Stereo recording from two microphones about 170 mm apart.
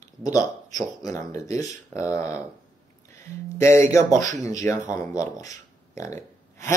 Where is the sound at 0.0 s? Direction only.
20° left (ahead or behind).